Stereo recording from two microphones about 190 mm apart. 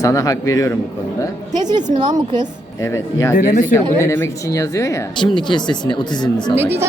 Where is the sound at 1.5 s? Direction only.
20° right (ahead or behind).